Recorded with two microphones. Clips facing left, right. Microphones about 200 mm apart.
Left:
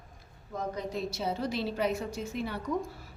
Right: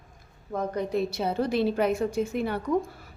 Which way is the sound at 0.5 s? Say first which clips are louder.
Right 7 dB; 60° right (ahead or behind).